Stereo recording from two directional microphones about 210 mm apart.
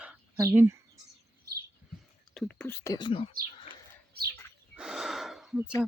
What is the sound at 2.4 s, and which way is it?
Speech, 5° left (ahead or behind).